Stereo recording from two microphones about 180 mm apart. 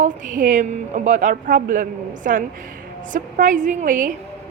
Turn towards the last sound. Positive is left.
turn(degrees=-45)  # may be behind; listen again after turning